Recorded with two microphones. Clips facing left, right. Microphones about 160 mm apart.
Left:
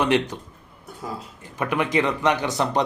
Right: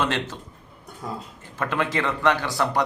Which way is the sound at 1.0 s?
Centre (ahead or behind).